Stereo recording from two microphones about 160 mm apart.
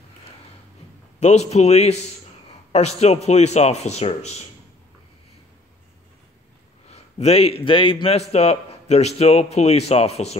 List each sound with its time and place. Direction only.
1.2 s a man's voice: 45° left (ahead or behind)
6.9 s a man's voice: 40° left (ahead or behind)